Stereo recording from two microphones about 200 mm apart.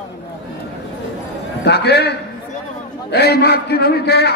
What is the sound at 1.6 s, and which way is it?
A man's voice, 55° left (ahead or behind).